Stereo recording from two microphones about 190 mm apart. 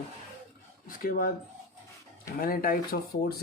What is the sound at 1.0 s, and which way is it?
Speech, 50° left (ahead or behind).